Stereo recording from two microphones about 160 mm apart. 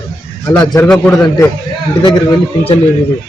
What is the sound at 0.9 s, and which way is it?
Speech, 5° left (ahead or behind).